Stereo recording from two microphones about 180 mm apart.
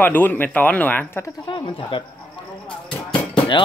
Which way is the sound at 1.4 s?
25° left (ahead or behind).